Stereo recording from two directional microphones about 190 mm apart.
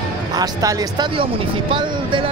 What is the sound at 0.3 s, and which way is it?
Speech, 20° right (ahead or behind).